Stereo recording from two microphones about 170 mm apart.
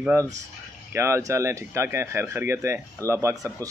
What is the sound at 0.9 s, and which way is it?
Speech, 15° right (ahead or behind).